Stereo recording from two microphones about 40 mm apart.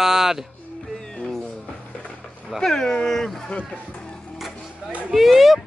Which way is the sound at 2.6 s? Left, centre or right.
Centre.